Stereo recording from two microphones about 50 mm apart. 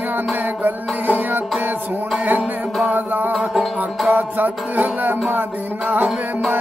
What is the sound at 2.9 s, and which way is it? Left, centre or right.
Music, right.